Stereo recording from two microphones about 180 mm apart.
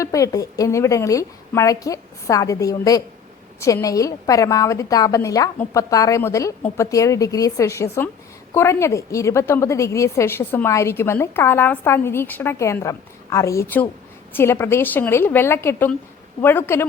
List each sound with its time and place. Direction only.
0.0 s a woman's voice: 20° left (ahead or behind)